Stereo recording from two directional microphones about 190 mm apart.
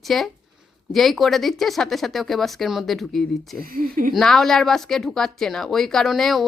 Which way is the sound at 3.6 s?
50° right (ahead or behind).